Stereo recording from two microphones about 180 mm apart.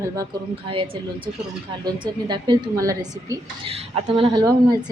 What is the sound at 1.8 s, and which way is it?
A woman's voice, 25° right (ahead or behind).